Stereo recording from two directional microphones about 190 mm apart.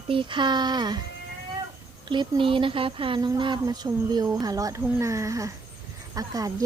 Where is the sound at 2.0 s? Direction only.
25° right (ahead or behind).